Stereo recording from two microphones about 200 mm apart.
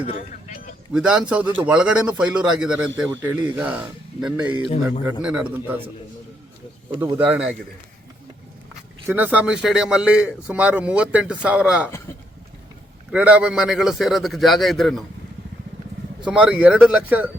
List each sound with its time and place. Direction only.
0.1 s a sound: 40° left (ahead or behind)
0.9 s a man's voice: 5° right (ahead or behind)
4.6 s a man's voice: 30° left (ahead or behind)
5.2 s speech: 5° right (ahead or behind)
7.0 s a man's voice: 10° right (ahead or behind)
9.0 s a man's voice: 10° right (ahead or behind)
13.1 s a man's voice: 5° right (ahead or behind)
16.2 s speech: 5° right (ahead or behind)